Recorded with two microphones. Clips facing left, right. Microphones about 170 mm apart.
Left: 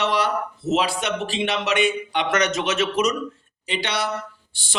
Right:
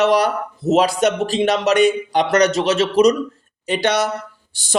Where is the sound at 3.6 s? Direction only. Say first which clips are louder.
Right 8 dB; 45° right (ahead or behind).